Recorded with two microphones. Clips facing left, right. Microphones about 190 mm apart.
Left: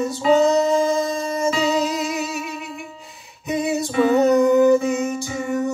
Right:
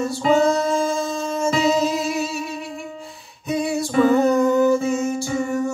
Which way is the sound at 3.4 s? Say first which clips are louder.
Even; 20° left (ahead or behind).